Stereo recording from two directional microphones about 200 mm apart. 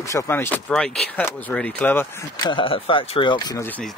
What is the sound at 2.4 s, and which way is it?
Speech, 25° left (ahead or behind).